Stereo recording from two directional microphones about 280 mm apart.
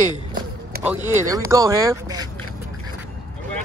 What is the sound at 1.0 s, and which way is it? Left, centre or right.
Speech, centre.